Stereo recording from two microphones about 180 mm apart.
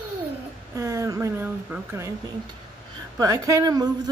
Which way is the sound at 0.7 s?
15° right (ahead or behind).